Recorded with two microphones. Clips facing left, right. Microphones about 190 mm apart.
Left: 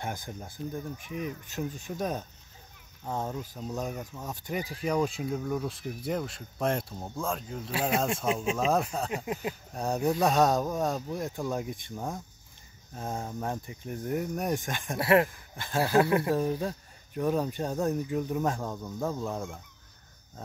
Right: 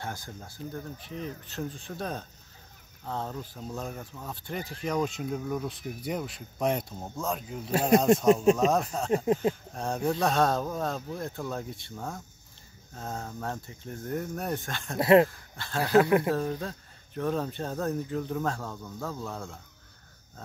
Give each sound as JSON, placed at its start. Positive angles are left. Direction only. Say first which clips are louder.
{"t": 0.0, "sound": "speech", "louder": "left 2 dB", "side_deg": 20}
{"t": 7.9, "sound": "speech", "louder": "right 8 dB", "side_deg": -45}
{"t": 8.5, "sound": "speech", "louder": "right 2 dB", "side_deg": 0}
{"t": 9.1, "sound": "a sound", "louder": "right 8 dB", "side_deg": -35}
{"t": 9.8, "sound": "speech", "louder": "left 1 dB", "side_deg": 5}
{"t": 15.0, "sound": "speech", "louder": "right 4 dB", "side_deg": -20}
{"t": 15.2, "sound": "speech", "louder": "right 2 dB", "side_deg": 15}
{"t": 15.9, "sound": "speech", "louder": "right 3 dB", "side_deg": -20}
{"t": 16.3, "sound": "speech", "louder": "left 1 dB", "side_deg": 15}